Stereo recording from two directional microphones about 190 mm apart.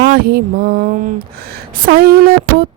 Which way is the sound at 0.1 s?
50° right (ahead or behind).